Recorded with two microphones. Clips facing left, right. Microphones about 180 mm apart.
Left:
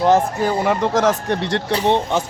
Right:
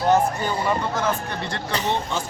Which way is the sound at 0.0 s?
90° left.